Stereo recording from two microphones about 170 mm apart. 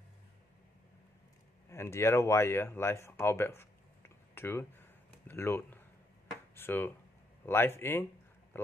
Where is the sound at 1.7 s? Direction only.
15° left (ahead or behind).